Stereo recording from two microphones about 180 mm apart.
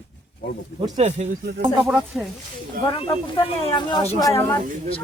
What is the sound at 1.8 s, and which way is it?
Speech, centre (ahead or behind).